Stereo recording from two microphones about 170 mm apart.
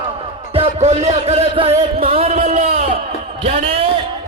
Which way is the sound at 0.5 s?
35° right (ahead or behind).